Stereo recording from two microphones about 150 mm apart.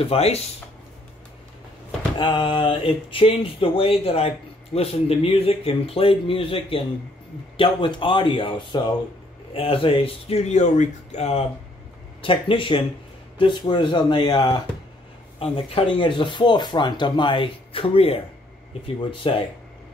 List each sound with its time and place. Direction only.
0.0 s speech: 40° left (ahead or behind)
2.1 s speech: 30° left (ahead or behind)
12.2 s speech: 35° left (ahead or behind)